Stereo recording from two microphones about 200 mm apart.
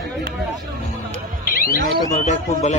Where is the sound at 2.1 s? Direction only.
35° left (ahead or behind).